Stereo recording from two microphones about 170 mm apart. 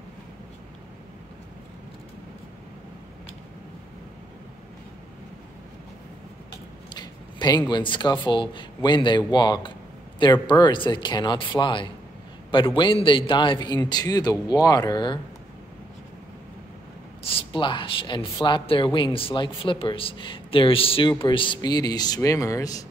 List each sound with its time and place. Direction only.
6.9 s a man's voice: 25° left (ahead or behind)
17.2 s speech: 35° left (ahead or behind)